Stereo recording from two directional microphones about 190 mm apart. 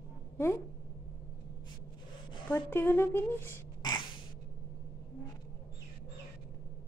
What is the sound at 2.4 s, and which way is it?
A woman's voice, 10° left (ahead or behind).